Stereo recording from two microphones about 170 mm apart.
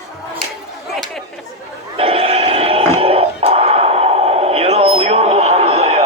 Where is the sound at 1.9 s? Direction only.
35° right (ahead or behind).